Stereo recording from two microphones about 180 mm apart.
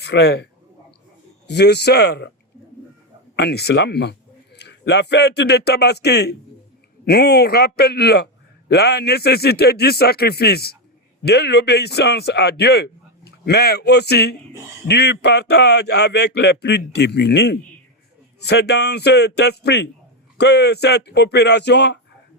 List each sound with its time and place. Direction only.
0.0 s a man's voice: 70° left (ahead or behind)
1.5 s speech: 65° left (ahead or behind)
3.3 s a man's voice: 65° left (ahead or behind)